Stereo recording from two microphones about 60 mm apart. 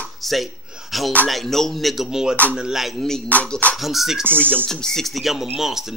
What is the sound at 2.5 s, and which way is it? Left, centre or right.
Speech, centre.